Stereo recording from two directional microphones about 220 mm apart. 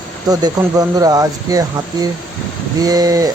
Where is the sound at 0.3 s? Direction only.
15° right (ahead or behind).